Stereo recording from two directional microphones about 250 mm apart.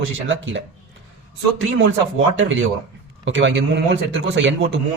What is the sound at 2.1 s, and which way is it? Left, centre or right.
Speech, right.